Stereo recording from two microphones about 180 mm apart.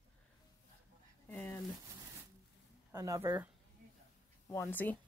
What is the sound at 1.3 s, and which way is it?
Speech, 10° left (ahead or behind).